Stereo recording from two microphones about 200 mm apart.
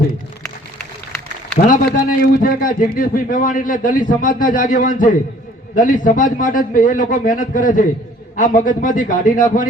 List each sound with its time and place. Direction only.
1.6 s a man's voice: 40° left (ahead or behind)